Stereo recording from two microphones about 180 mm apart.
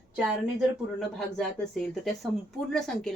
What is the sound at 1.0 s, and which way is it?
Speech, centre (ahead or behind).